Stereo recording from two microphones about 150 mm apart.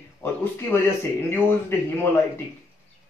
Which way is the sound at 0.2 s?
15° left (ahead or behind).